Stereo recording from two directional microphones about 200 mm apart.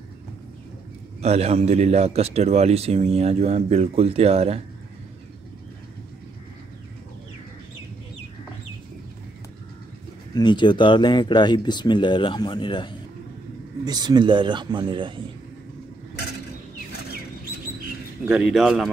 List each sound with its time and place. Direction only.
1.2 s speech: 30° right (ahead or behind)
10.3 s speech: 20° left (ahead or behind)
13.8 s speech: 20° right (ahead or behind)
18.2 s speech: 5° right (ahead or behind)